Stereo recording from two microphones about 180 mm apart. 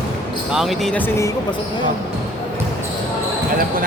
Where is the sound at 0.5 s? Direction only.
Centre (ahead or behind).